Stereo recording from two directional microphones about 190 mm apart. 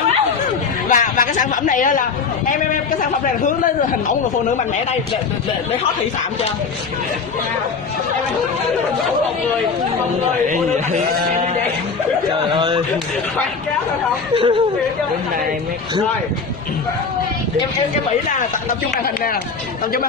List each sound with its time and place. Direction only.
0.8 s speech: 45° left (ahead or behind)
12.5 s speech: 25° right (ahead or behind)
14.3 s speech: 25° right (ahead or behind)